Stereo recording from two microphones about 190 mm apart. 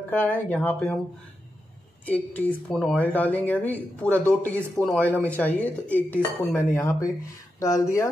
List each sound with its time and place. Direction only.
0.1 s speech: 10° left (ahead or behind)
2.0 s speech: 10° left (ahead or behind)